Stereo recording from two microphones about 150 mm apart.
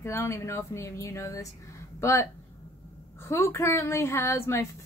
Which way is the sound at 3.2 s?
15° left (ahead or behind).